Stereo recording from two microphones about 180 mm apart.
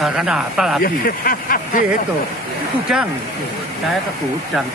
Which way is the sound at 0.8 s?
55° left (ahead or behind).